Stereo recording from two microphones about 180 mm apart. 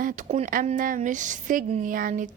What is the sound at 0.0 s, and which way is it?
A woman's voice, 45° right (ahead or behind).